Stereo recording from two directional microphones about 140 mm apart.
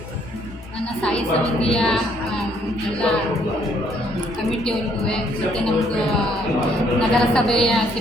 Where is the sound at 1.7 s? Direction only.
5° left (ahead or behind).